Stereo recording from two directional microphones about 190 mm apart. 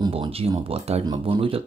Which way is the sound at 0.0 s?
25° right (ahead or behind).